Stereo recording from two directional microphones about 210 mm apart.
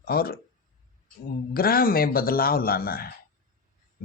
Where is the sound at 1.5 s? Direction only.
45° left (ahead or behind).